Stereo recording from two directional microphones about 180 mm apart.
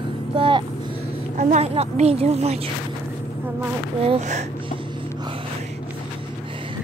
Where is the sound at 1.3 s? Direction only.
40° right (ahead or behind).